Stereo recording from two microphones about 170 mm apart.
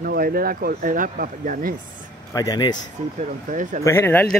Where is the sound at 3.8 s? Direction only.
15° left (ahead or behind).